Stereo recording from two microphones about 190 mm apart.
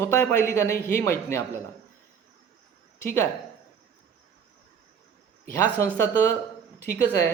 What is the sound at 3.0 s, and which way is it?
Speech, 10° left (ahead or behind).